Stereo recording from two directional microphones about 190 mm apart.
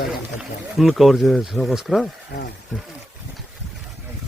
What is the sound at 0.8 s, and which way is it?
Speech, centre (ahead or behind).